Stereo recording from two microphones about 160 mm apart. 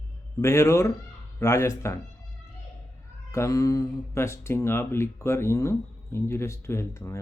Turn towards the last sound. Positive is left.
turn(degrees=20)  # may be behind; listen again after turning